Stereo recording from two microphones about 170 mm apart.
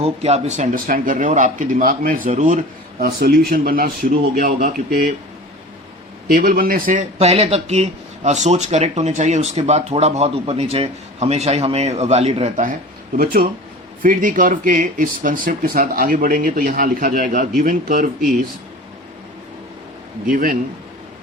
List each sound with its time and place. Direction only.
0.0 s speech: 40° right (ahead or behind); by 5.1 s 60° right (ahead or behind)
6.2 s speech: 55° right (ahead or behind)
13.1 s speech: 60° right (ahead or behind)
20.2 s speech: 55° right (ahead or behind)